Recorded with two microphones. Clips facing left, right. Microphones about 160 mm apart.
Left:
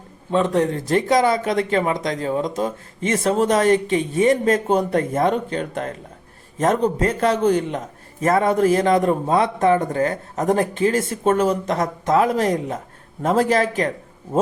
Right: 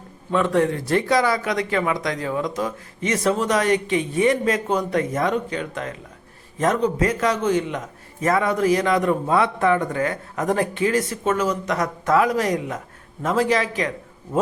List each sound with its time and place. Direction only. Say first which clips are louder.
0.3 s speech: left 1 dB; 25° left (ahead or behind)
3.4 s speech: left 4 dB; 45° left (ahead or behind)
4.9 s a man's voice: left 2 dB; 30° left (ahead or behind)
8.2 s speech: left 2 dB; 45° left (ahead or behind)
8.8 s a man's voice: left 3 dB; 35° left (ahead or behind)
13.4 s speech: left 1 dB; 45° left (ahead or behind)